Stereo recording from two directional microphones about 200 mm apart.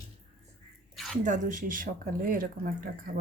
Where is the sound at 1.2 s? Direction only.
40° right (ahead or behind).